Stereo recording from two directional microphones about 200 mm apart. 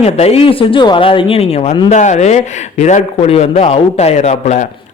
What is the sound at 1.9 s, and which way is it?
Speech, 35° left (ahead or behind).